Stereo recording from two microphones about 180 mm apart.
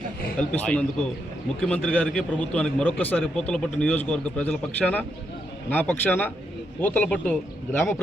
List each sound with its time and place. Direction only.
0.3 s a man's voice: 10° left (ahead or behind)